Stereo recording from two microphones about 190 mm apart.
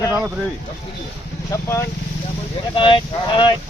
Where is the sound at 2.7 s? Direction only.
25° left (ahead or behind).